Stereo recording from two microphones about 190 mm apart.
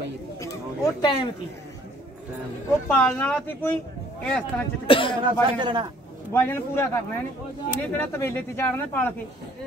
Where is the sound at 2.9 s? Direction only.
5° left (ahead or behind).